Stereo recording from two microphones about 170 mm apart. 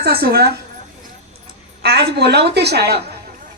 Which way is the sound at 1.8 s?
75° right (ahead or behind).